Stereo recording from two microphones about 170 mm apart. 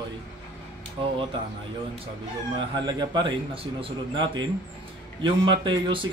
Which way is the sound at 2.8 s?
25° right (ahead or behind).